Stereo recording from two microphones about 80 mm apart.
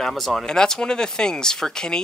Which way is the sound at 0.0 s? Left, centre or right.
Centre.